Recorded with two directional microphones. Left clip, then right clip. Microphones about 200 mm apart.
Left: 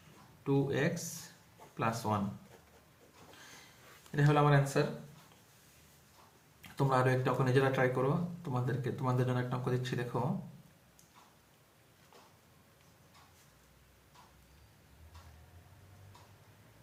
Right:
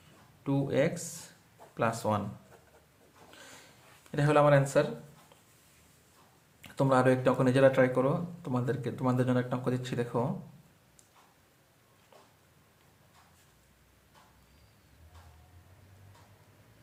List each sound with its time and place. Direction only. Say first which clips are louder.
0.4 s speech: right 3 dB; 45° right (ahead or behind)
4.1 s speech: right 6 dB; 55° right (ahead or behind)
6.6 s speech: right 5 dB; 50° right (ahead or behind)